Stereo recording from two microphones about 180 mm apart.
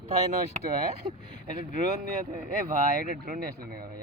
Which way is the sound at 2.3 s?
50° right (ahead or behind).